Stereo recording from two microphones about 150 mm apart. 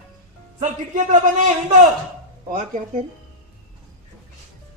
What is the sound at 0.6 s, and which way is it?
A man's voice, 55° right (ahead or behind).